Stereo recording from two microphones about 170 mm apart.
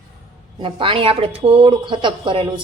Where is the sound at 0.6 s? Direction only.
30° right (ahead or behind).